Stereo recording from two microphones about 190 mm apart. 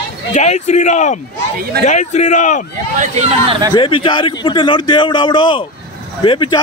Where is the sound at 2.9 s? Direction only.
40° right (ahead or behind).